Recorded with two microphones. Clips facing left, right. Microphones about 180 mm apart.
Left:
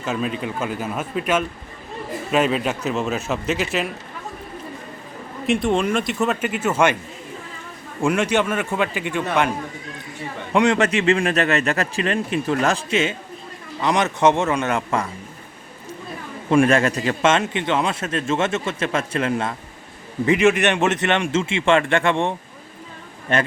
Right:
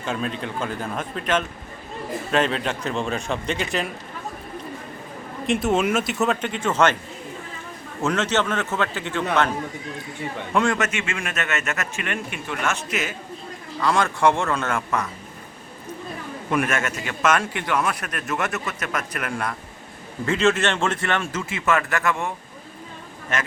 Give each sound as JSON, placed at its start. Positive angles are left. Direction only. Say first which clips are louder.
{"t": 0.0, "sound": "a man's voice", "louder": "left 3 dB", "side_deg": 5}
{"t": 5.5, "sound": "speech", "louder": "left 1 dB", "side_deg": -5}
{"t": 8.0, "sound": "a man's voice", "louder": "left 3 dB", "side_deg": 10}
{"t": 10.5, "sound": "speech", "louder": "left 4 dB", "side_deg": 20}
{"t": 10.8, "sound": "speech", "louder": "left 9 dB", "side_deg": 35}
{"t": 16.5, "sound": "speech", "louder": "left 8 dB", "side_deg": 30}